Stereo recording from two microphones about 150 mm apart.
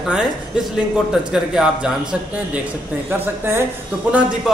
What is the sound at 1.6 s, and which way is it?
Speech, 5° right (ahead or behind).